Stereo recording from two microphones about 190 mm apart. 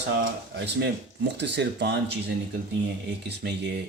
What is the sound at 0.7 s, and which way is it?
Speech, 65° right (ahead or behind).